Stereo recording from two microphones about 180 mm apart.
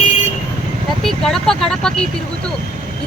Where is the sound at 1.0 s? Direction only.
Centre (ahead or behind).